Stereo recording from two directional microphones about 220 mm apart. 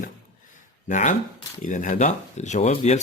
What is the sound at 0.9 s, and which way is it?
Speech, 35° left (ahead or behind).